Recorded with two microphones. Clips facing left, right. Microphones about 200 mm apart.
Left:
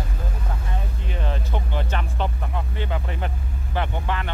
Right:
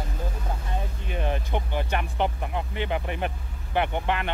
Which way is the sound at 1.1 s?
15° right (ahead or behind).